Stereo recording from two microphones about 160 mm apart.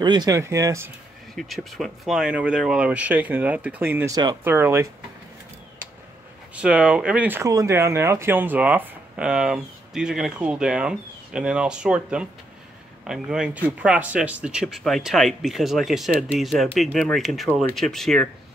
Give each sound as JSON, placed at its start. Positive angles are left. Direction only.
{"t": 0.0, "sound": "speech", "side_deg": -25}
{"t": 1.3, "sound": "speech", "side_deg": 0}
{"t": 6.5, "sound": "speech", "side_deg": -5}